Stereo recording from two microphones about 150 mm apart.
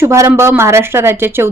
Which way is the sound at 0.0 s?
15° right (ahead or behind).